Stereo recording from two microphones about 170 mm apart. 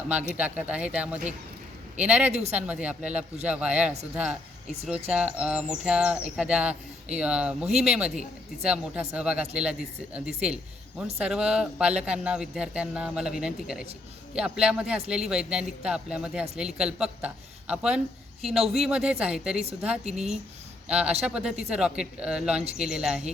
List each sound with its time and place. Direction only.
0.1 s speech: 10° right (ahead or behind)
2.3 s speech: 40° right (ahead or behind)
2.6 s speech: 10° right (ahead or behind)